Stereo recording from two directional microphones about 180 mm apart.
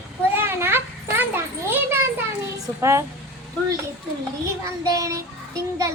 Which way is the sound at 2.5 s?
15° right (ahead or behind).